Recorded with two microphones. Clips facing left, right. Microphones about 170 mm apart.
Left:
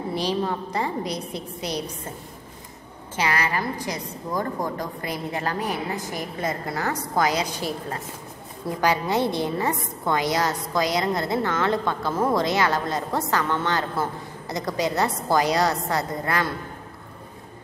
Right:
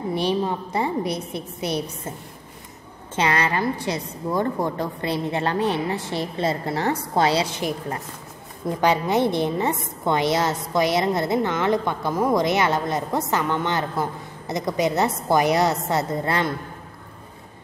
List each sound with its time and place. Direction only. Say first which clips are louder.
0.1 s a woman's voice: right 3 dB; 20° right (ahead or behind)
1.6 s a woman's voice: right 4 dB; 20° left (ahead or behind)
3.2 s a woman's voice: right 3 dB; 25° right (ahead or behind)
8.6 s a woman's voice: right 2 dB; 20° right (ahead or behind)